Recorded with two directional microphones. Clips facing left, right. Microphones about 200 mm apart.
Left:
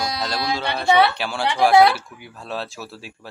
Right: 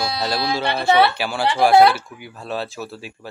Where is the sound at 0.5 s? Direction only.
5° right (ahead or behind).